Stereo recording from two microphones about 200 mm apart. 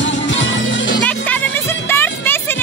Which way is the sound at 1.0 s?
10° left (ahead or behind).